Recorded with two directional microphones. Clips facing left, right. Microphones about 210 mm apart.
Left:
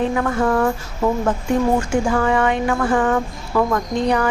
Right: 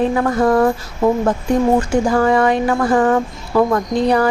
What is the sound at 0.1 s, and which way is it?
Speech, 35° right (ahead or behind).